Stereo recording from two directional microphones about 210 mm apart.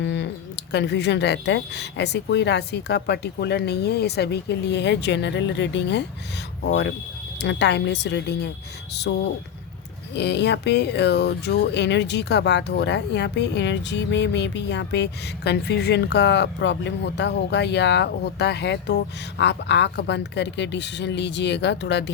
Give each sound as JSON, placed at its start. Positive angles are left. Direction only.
{"t": 0.0, "sound": "speech", "side_deg": 55}
{"t": 7.3, "sound": "speech", "side_deg": 55}